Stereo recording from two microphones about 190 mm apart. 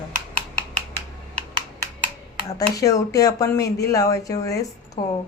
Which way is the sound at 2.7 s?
20° left (ahead or behind).